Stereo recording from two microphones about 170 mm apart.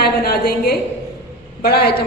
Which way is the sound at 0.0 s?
65° left (ahead or behind).